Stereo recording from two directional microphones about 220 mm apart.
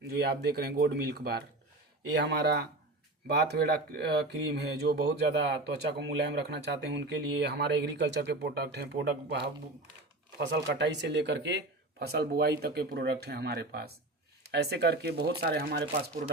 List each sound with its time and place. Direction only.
0.1 s speech: 45° right (ahead or behind)